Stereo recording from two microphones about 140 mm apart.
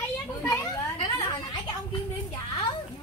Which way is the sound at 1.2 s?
30° left (ahead or behind).